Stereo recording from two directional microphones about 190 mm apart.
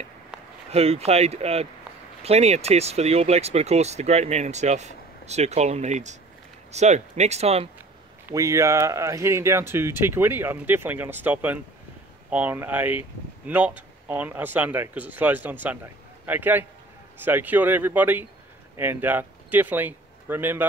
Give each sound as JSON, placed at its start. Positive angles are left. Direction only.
{"t": 0.3, "sound": "a sound", "side_deg": -5}
{"t": 0.7, "sound": "speech", "side_deg": -35}
{"t": 8.3, "sound": "speech", "side_deg": -15}